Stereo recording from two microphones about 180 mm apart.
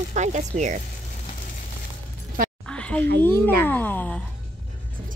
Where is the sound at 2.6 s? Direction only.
5° left (ahead or behind).